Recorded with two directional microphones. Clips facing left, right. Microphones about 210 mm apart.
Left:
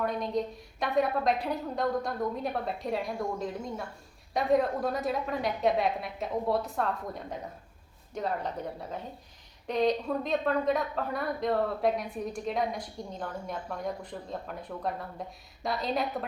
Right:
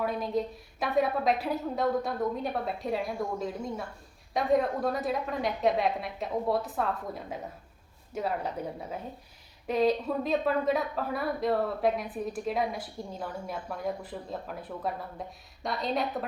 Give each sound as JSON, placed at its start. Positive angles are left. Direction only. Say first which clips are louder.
{"t": 0.0, "sound": "a woman's voice", "louder": "even", "side_deg": -5}